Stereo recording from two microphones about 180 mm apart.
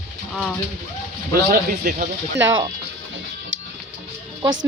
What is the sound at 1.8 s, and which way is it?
Speech, 50° right (ahead or behind).